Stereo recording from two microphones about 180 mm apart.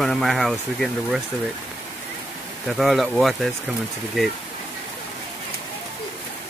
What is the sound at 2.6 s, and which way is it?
Speech, centre (ahead or behind).